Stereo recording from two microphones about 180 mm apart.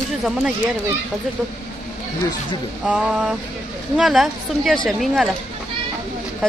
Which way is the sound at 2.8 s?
5° right (ahead or behind).